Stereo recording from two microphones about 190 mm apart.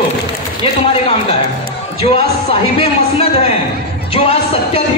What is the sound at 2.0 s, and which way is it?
Speech, 30° left (ahead or behind).